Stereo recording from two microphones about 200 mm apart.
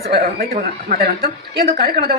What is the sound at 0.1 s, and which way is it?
Speech, 45° right (ahead or behind).